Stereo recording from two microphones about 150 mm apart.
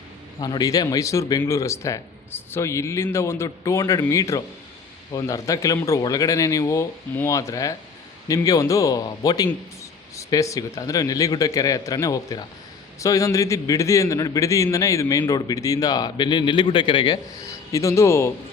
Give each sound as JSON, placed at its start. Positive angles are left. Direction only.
{"t": 0.3, "sound": "a man's voice", "side_deg": 30}
{"t": 17.7, "sound": "speech", "side_deg": 20}